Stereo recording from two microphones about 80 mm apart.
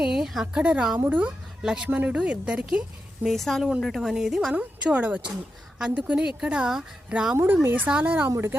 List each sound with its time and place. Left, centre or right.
0.0 s a sound: centre
0.6 s a woman's voice: centre
1.6 s a woman's voice: centre
3.2 s a woman's voice: centre
4.5 s a woman's voice: centre
7.3 s a woman's voice: right
8.3 s a woman's voice: right